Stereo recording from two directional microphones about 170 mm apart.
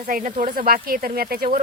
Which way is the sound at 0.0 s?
50° right (ahead or behind).